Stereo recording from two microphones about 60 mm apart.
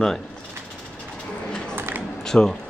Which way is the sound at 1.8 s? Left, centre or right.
Right.